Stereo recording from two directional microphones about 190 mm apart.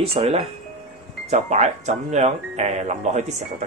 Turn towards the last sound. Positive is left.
turn(degrees=-35)  # may be behind; listen again after turning